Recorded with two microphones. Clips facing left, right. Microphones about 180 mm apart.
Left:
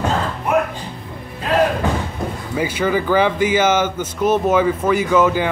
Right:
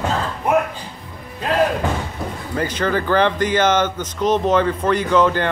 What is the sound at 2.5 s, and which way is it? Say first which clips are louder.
Speech: left 1 dB; 10° left (ahead or behind).